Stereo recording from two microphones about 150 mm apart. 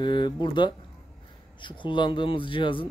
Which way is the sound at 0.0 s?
30° left (ahead or behind).